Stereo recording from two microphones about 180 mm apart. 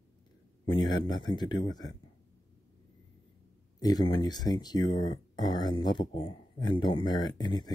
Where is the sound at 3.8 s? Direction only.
20° left (ahead or behind).